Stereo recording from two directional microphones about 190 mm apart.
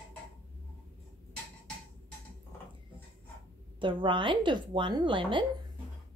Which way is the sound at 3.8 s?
25° right (ahead or behind).